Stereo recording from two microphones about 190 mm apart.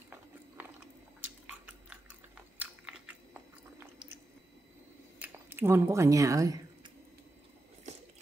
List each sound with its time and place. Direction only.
0.1 s biting: 10° right (ahead or behind)
5.2 s speech: 10° right (ahead or behind)